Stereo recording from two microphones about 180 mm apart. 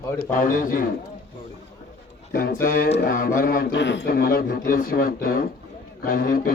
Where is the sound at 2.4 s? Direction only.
50° left (ahead or behind).